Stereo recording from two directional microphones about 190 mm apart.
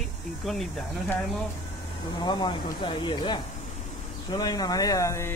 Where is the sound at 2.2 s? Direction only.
25° left (ahead or behind).